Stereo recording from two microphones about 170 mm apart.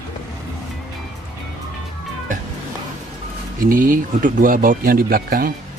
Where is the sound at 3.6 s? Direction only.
55° right (ahead or behind).